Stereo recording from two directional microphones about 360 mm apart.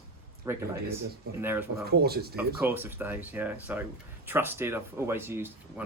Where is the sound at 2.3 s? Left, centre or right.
Centre.